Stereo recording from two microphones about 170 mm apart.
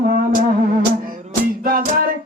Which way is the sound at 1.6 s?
60° right (ahead or behind).